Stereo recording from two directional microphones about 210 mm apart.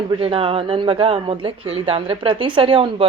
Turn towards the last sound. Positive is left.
turn(degrees=-25)  # may be behind; listen again after turning